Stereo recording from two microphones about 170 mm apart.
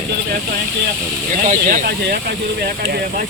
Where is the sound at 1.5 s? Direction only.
50° right (ahead or behind).